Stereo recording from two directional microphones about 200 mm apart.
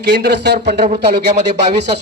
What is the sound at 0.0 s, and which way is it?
A man's voice, 55° right (ahead or behind).